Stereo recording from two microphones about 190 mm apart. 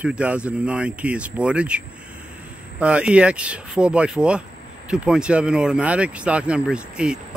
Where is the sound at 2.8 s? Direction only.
5° right (ahead or behind).